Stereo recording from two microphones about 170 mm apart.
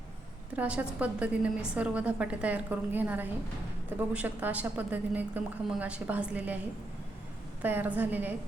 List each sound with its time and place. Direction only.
0.5 s a woman's voice: 10° right (ahead or behind)
7.6 s a woman's voice: 10° right (ahead or behind)